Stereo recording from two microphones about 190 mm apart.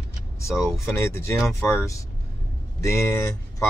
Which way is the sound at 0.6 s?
15° left (ahead or behind).